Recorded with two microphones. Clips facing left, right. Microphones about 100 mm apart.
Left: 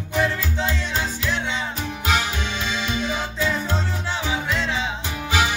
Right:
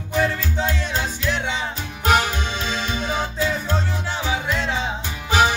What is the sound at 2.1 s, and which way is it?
Music, 45° right (ahead or behind).